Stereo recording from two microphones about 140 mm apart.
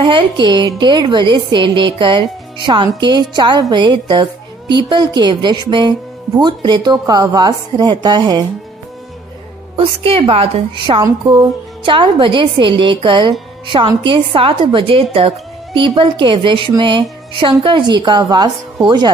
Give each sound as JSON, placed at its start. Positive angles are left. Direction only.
{"t": 0.0, "sound": "a woman's voice", "side_deg": -35}
{"t": 9.8, "sound": "a woman's voice", "side_deg": -40}